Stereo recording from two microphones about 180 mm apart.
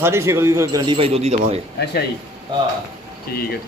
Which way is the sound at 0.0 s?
15° right (ahead or behind).